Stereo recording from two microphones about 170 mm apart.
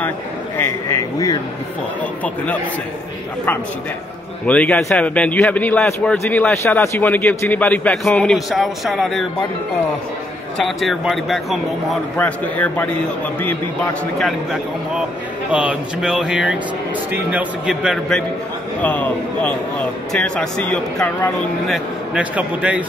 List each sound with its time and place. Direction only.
0.6 s a sound: 15° left (ahead or behind)
2.2 s a man's voice: 10° left (ahead or behind)
4.5 s a man's voice: 10° left (ahead or behind)
10.6 s speech: centre (ahead or behind)
12.2 s a man's voice: 10° left (ahead or behind)
14.1 s speech: centre (ahead or behind)
18.8 s a man's voice: 10° left (ahead or behind); by 22.8 s 10° right (ahead or behind)